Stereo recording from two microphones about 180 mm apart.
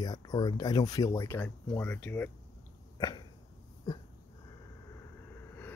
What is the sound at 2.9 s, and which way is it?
Cough, 25° left (ahead or behind).